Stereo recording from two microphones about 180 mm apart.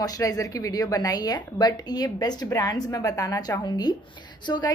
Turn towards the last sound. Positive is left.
turn(degrees=25)  # may be behind; listen again after turning